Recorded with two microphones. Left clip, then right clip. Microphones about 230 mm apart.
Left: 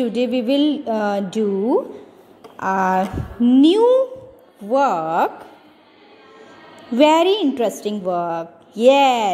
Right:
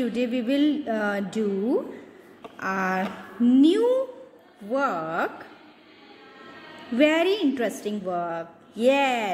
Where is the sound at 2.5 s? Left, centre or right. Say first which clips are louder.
Left 8 dB; left.